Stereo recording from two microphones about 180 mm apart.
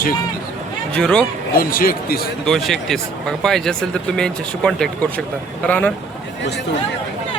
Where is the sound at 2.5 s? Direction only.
Centre (ahead or behind).